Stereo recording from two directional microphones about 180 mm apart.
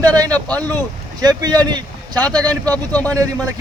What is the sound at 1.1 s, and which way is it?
Speech, 20° right (ahead or behind).